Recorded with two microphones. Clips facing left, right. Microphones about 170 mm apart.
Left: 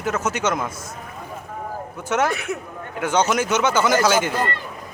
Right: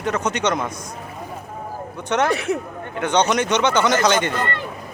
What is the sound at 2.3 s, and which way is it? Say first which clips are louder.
Speech: right 5 dB; 35° right (ahead or behind).